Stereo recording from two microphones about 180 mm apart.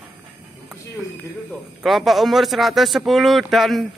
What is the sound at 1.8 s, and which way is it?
Speech, centre (ahead or behind).